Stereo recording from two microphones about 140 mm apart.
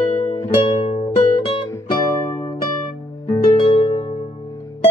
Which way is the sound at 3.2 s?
25° left (ahead or behind).